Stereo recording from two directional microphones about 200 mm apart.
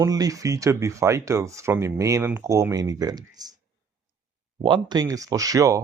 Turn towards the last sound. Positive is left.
turn(degrees=-15)  # may be behind; listen again after turning